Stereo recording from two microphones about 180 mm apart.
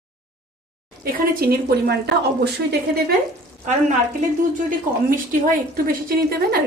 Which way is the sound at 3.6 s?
40° right (ahead or behind).